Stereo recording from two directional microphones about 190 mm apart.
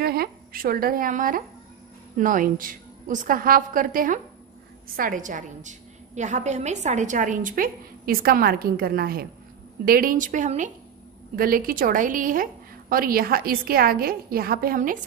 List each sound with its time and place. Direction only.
0.0 s a woman's voice: 55° right (ahead or behind)